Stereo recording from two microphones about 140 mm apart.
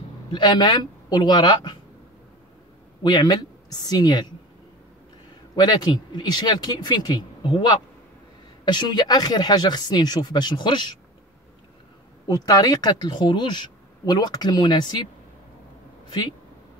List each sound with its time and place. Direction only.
0.3 s speech: 30° left (ahead or behind)
3.0 s speech: 30° left (ahead or behind)
5.6 s speech: 30° left (ahead or behind)
12.3 s speech: 30° left (ahead or behind)